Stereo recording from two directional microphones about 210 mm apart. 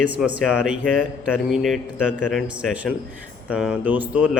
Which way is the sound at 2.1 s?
40° right (ahead or behind).